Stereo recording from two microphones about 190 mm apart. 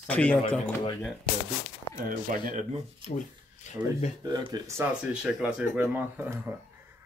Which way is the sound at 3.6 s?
40° left (ahead or behind).